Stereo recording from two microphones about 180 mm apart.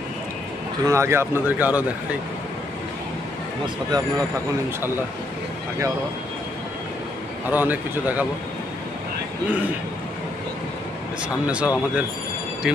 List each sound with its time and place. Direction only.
0.8 s speech: 15° right (ahead or behind)
3.9 s speech: 20° right (ahead or behind)
7.4 s speech: 10° right (ahead or behind)
11.2 s speech: 5° right (ahead or behind)